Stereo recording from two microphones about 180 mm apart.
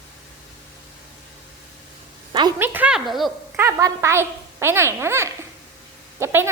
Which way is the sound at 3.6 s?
15° right (ahead or behind).